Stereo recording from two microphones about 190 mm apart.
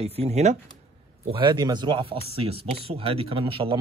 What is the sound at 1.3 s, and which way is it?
Speech, 25° right (ahead or behind).